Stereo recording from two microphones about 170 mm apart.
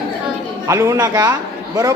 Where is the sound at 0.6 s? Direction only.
20° right (ahead or behind).